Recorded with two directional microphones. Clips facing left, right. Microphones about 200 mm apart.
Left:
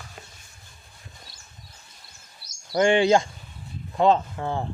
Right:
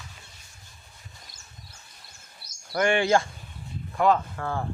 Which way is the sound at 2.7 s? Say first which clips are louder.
Left 4 dB; 20° left (ahead or behind).